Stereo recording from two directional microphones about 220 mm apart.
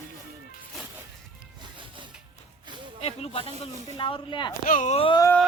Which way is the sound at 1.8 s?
20° right (ahead or behind).